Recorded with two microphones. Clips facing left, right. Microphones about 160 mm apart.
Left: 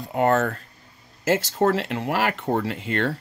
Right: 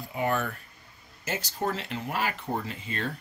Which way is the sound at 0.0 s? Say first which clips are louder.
Left 8 dB; 80° left.